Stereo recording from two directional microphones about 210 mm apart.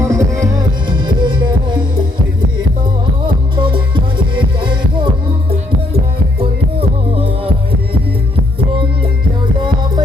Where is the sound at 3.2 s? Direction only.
25° right (ahead or behind).